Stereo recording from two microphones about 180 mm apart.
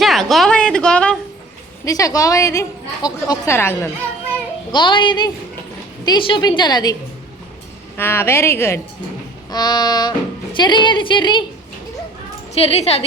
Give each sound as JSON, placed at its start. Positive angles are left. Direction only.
{"t": 0.0, "sound": "a sound", "side_deg": 0}
{"t": 1.8, "sound": "a woman's voice", "side_deg": 20}
{"t": 4.7, "sound": "speech", "side_deg": 25}
{"t": 7.9, "sound": "a woman's voice", "side_deg": 15}
{"t": 12.5, "sound": "a woman's voice", "side_deg": 35}